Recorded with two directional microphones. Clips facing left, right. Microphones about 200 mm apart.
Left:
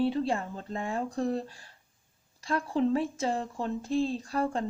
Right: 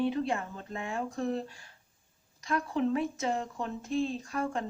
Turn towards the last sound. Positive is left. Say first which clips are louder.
# left 3 dB
turn(degrees=35)  # may be behind; listen again after turning